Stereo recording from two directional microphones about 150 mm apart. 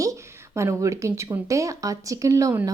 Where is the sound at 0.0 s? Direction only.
20° right (ahead or behind).